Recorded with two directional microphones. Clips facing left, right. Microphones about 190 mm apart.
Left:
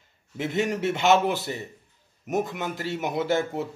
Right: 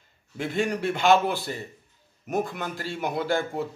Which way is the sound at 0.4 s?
20° left (ahead or behind).